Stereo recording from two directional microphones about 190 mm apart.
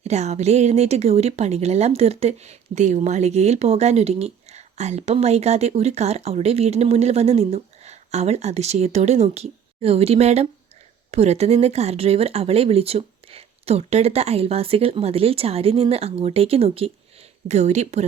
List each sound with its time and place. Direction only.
0.0 s speech: 35° right (ahead or behind)